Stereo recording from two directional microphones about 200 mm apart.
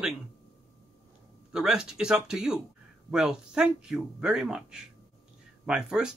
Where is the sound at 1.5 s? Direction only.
5° right (ahead or behind).